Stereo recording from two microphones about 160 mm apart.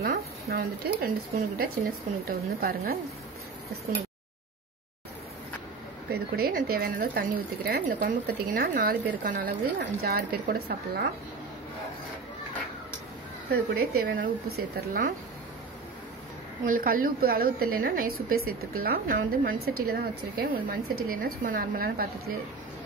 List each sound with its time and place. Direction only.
0.0 s speech: 75° right (ahead or behind)
6.1 s speech: 75° right (ahead or behind)
13.5 s speech: 70° right (ahead or behind)
14.9 s a woman's voice: 60° right (ahead or behind)
16.6 s a woman's voice: 60° right (ahead or behind)